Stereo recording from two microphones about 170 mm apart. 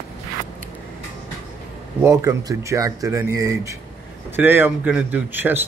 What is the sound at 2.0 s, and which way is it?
Speech, 20° right (ahead or behind).